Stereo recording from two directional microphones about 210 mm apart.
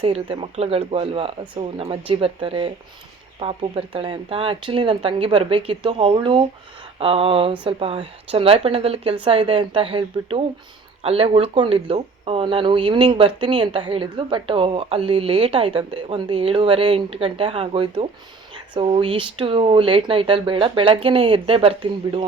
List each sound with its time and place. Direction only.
0.0 s speech: 25° right (ahead or behind)